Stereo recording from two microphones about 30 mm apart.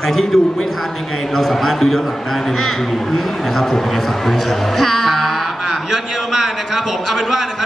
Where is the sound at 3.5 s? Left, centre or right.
Centre.